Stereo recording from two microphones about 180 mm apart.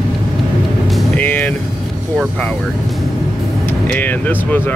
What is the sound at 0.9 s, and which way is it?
Music, 5° left (ahead or behind).